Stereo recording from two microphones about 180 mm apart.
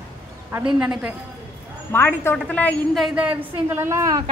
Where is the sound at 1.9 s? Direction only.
10° left (ahead or behind); by 4.2 s 20° right (ahead or behind).